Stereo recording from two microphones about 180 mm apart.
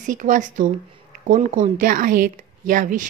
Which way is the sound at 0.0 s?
45° right (ahead or behind).